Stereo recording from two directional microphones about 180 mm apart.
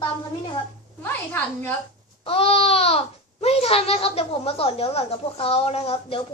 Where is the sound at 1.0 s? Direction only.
10° left (ahead or behind).